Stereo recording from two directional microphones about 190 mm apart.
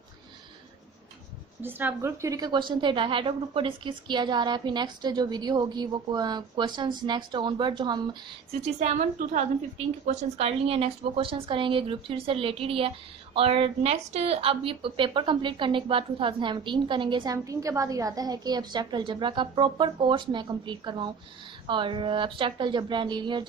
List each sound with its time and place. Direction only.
1.6 s speech: 10° right (ahead or behind)
8.8 s a woman's voice: 40° right (ahead or behind)